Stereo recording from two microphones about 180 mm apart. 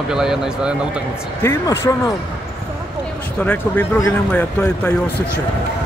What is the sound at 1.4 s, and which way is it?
Speech, 15° left (ahead or behind).